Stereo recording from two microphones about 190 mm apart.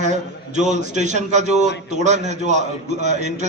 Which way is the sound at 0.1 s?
40° right (ahead or behind).